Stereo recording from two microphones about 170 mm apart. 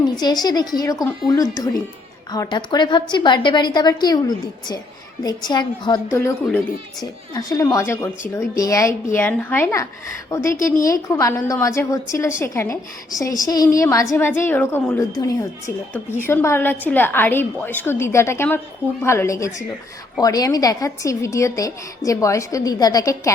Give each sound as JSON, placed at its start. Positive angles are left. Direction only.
{"t": 0.4, "sound": "a woman's voice", "side_deg": 25}
{"t": 7.0, "sound": "a woman's voice", "side_deg": 20}
{"t": 10.6, "sound": "a woman's voice", "side_deg": 50}
{"t": 10.8, "sound": "a woman's voice", "side_deg": 20}